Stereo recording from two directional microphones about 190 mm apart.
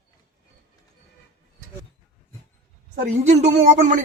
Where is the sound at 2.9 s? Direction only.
40° right (ahead or behind).